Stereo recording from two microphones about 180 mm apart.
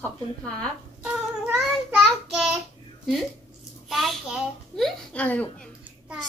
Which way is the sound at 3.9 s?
Centre (ahead or behind).